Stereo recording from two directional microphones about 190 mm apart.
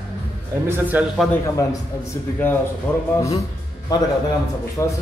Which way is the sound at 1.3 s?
15° left (ahead or behind).